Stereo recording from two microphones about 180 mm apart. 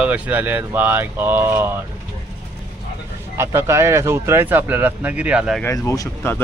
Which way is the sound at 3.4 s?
15° right (ahead or behind).